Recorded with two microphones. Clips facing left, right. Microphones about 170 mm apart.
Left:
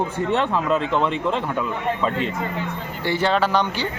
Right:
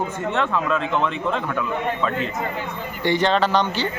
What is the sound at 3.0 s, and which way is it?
Speech, 10° left (ahead or behind).